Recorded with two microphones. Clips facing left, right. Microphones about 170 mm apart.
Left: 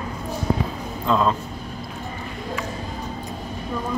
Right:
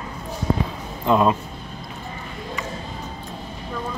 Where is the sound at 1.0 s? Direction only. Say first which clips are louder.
Right 3 dB; 15° right (ahead or behind).